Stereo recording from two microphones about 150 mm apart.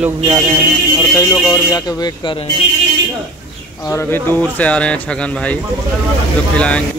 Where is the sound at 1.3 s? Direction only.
Centre (ahead or behind).